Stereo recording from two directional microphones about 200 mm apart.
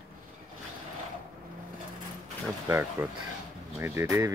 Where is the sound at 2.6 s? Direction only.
10° right (ahead or behind).